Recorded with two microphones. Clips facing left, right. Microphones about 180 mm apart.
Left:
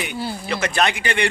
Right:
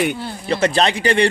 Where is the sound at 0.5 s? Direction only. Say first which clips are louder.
Right 5 dB; 30° right (ahead or behind).